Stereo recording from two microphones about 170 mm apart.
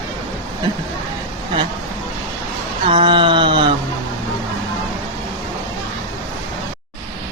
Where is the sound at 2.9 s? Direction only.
30° right (ahead or behind).